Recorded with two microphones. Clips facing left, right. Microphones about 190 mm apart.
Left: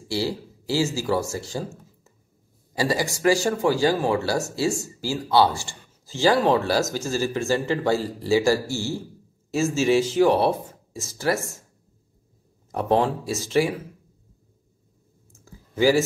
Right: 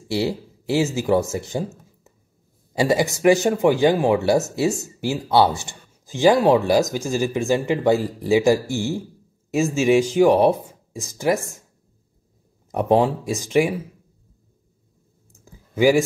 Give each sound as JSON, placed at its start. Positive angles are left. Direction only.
{"t": 0.1, "sound": "speech", "side_deg": -20}
{"t": 2.8, "sound": "speech", "side_deg": -20}
{"t": 12.7, "sound": "speech", "side_deg": -15}
{"t": 15.3, "sound": "clicking", "side_deg": -15}